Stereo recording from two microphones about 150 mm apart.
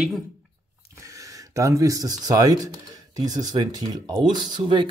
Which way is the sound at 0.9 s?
20° right (ahead or behind).